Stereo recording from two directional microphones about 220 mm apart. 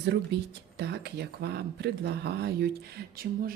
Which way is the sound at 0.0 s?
50° right (ahead or behind).